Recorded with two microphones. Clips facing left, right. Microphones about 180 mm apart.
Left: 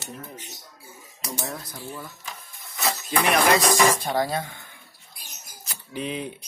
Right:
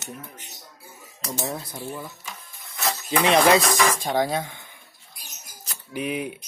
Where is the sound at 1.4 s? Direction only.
25° right (ahead or behind).